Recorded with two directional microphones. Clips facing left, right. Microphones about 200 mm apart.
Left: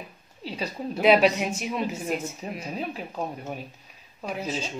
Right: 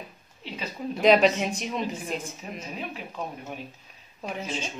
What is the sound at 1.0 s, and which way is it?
A woman's voice, 5° left (ahead or behind).